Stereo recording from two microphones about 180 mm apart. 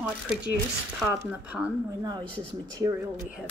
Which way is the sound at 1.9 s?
20° right (ahead or behind).